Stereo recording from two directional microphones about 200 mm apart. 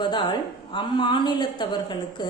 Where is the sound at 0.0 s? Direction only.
25° left (ahead or behind).